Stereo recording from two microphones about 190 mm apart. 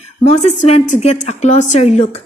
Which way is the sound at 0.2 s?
35° left (ahead or behind).